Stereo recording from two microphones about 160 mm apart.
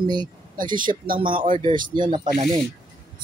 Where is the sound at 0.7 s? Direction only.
60° right (ahead or behind).